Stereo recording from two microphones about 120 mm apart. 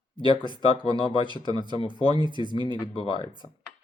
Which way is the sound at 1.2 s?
40° right (ahead or behind).